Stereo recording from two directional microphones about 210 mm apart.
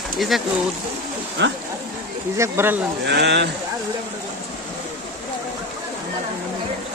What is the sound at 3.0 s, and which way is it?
Speech, 55° right (ahead or behind).